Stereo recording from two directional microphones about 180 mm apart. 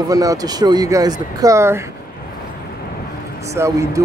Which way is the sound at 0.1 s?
20° right (ahead or behind).